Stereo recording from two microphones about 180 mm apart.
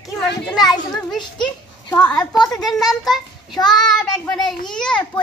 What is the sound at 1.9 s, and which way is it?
Speech, 10° left (ahead or behind).